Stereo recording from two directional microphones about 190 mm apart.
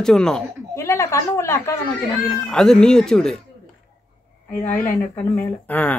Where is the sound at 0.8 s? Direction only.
15° left (ahead or behind).